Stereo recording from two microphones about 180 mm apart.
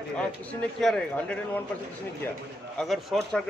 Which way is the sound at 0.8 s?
5° left (ahead or behind).